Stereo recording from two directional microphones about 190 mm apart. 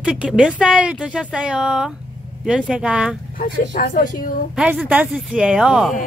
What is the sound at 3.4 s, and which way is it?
Speech, 45° left (ahead or behind).